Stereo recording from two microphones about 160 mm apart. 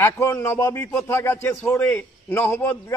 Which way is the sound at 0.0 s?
15° left (ahead or behind).